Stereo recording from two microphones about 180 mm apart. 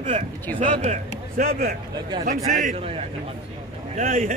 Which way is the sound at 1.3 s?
55° right (ahead or behind).